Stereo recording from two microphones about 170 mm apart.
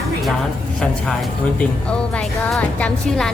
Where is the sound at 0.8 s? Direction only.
Centre (ahead or behind).